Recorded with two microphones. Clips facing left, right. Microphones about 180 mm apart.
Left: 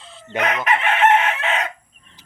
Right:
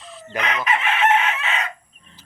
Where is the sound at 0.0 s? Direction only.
25° left (ahead or behind).